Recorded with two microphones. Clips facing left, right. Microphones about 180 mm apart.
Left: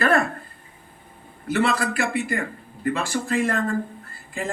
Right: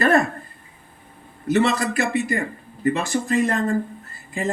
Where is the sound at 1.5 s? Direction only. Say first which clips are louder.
Right 3 dB; 20° right (ahead or behind).